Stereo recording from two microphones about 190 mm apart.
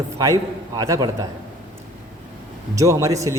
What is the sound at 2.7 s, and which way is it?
Speech, 15° right (ahead or behind).